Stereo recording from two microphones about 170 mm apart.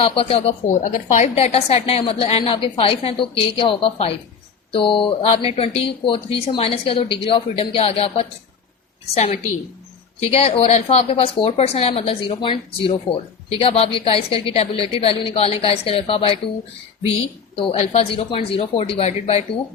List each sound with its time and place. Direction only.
0.0 s speech: 35° left (ahead or behind)
0.7 s a woman's voice: 50° left (ahead or behind)